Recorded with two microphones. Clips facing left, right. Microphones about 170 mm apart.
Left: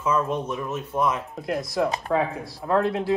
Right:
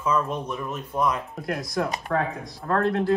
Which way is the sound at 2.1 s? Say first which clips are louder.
Left 2 dB; 20° left (ahead or behind).